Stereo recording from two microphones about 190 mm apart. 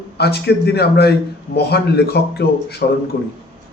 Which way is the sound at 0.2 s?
60° left (ahead or behind).